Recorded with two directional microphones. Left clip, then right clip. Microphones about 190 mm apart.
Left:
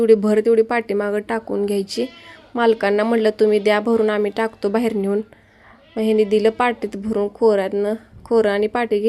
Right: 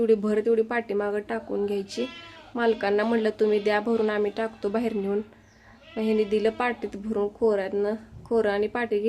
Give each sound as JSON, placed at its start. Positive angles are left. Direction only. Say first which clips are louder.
{"t": 0.0, "sound": "speech", "louder": "left 8 dB", "side_deg": 35}